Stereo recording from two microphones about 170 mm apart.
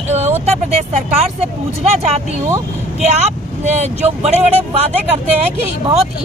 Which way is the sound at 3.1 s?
40° right (ahead or behind).